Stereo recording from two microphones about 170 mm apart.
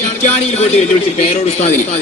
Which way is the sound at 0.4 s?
40° left (ahead or behind).